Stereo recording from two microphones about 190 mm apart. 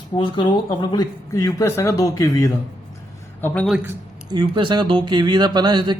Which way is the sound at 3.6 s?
10° right (ahead or behind).